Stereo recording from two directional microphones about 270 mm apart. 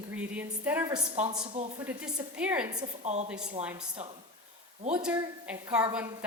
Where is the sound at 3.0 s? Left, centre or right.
Right.